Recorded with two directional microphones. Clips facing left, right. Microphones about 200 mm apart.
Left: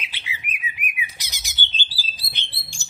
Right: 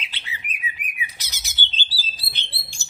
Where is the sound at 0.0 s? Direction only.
10° left (ahead or behind).